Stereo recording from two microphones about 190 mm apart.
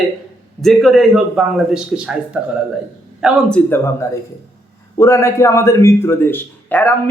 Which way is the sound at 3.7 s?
15° left (ahead or behind).